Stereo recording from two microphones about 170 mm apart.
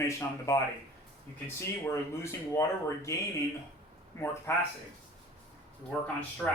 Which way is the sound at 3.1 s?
20° left (ahead or behind).